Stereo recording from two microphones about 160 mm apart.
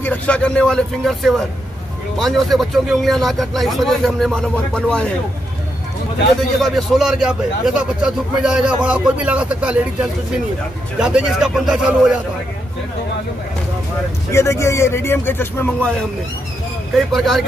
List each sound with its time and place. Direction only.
0.0 s a man's voice: 10° left (ahead or behind)
6.6 s a man's voice: centre (ahead or behind)
14.3 s speech: 15° left (ahead or behind)
16.9 s a man's voice: centre (ahead or behind)